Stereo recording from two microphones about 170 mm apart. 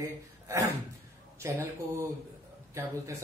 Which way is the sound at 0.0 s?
20° right (ahead or behind).